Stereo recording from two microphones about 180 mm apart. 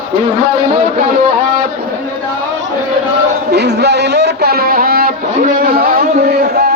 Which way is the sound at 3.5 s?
65° right (ahead or behind).